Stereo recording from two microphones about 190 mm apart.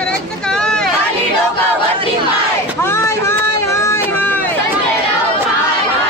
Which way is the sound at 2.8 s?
15° left (ahead or behind).